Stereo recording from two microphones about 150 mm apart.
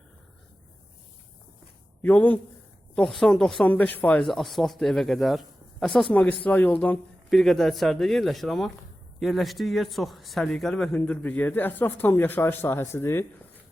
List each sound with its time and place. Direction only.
2.0 s a man's voice: 10° left (ahead or behind)